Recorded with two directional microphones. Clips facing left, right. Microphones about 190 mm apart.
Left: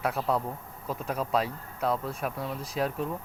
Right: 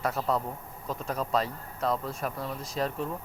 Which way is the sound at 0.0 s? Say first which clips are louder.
Left 1 dB; 10° left (ahead or behind).